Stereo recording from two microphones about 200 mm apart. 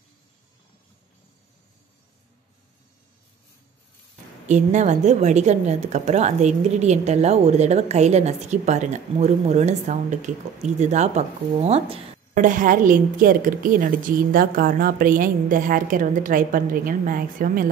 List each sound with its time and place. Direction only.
4.5 s a woman's voice: 35° right (ahead or behind)
12.4 s a woman's voice: 40° right (ahead or behind)